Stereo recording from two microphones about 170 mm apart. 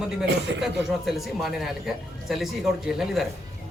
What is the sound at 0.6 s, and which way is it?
Speech, centre (ahead or behind).